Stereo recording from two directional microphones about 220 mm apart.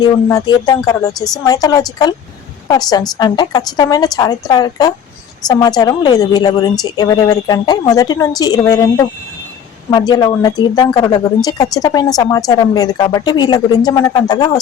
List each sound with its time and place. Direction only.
0.0 s a woman's voice: 15° left (ahead or behind)